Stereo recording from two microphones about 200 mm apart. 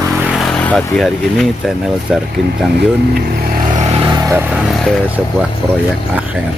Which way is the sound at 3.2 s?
50° right (ahead or behind).